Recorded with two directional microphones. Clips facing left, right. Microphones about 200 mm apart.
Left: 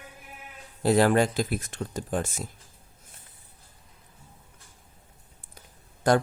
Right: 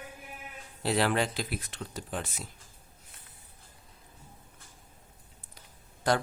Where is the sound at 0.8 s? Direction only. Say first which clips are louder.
Left 7 dB; 45° left (ahead or behind).